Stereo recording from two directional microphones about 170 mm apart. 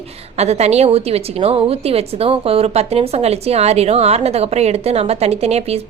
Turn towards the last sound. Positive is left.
turn(degrees=-40)  # may be behind; listen again after turning